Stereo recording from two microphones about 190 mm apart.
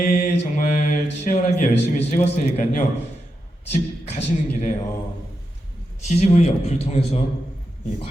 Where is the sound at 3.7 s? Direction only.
35° left (ahead or behind).